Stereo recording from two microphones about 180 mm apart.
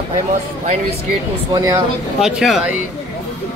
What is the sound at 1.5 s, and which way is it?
Speech, 20° right (ahead or behind).